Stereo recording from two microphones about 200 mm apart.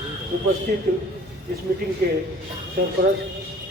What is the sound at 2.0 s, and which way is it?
Speech, 55° right (ahead or behind).